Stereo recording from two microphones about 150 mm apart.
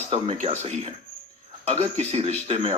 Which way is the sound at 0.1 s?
40° right (ahead or behind).